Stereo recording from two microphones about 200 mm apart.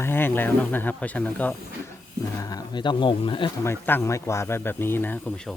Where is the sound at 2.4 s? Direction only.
20° left (ahead or behind).